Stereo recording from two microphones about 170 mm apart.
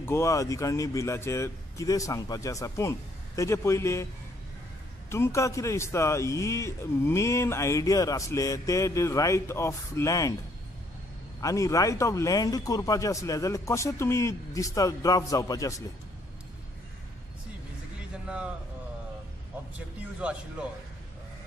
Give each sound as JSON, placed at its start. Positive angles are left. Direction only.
{"t": 0.0, "sound": "a man's voice", "side_deg": 15}
{"t": 5.1, "sound": "a man's voice", "side_deg": 15}
{"t": 11.4, "sound": "speech", "side_deg": 20}
{"t": 20.2, "sound": "speech", "side_deg": -5}